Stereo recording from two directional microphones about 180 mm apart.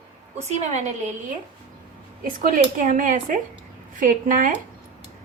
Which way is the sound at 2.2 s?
50° right (ahead or behind).